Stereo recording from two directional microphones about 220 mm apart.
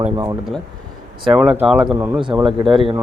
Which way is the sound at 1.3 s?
Centre (ahead or behind).